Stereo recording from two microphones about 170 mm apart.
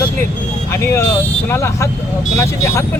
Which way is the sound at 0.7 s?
15° left (ahead or behind).